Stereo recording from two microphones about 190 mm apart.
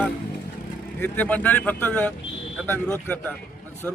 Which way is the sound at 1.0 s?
10° left (ahead or behind).